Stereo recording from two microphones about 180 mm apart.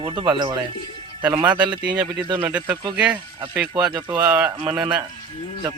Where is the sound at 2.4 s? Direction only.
10° right (ahead or behind).